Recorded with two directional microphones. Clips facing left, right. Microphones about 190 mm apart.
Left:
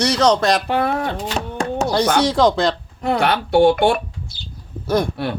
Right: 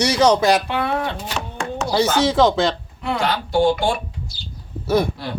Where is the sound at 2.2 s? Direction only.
Centre (ahead or behind).